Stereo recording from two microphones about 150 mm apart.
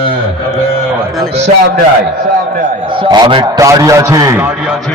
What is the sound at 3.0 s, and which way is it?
A man's voice, 35° right (ahead or behind).